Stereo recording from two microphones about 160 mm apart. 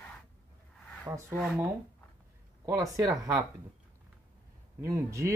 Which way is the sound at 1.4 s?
5° right (ahead or behind).